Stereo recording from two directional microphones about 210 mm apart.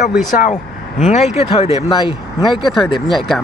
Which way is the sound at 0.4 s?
35° left (ahead or behind).